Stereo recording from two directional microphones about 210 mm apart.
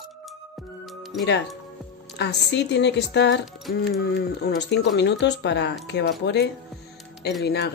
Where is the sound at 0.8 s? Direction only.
Centre (ahead or behind).